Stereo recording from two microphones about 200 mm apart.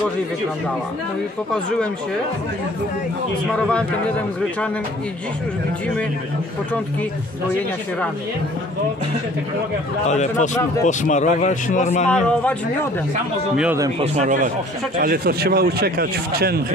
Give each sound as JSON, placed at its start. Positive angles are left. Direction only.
{"t": 10.0, "sound": "speech", "side_deg": 35}
{"t": 12.1, "sound": "a man's voice", "side_deg": 5}
{"t": 14.1, "sound": "speech", "side_deg": -35}
{"t": 15.0, "sound": "a man's voice", "side_deg": -50}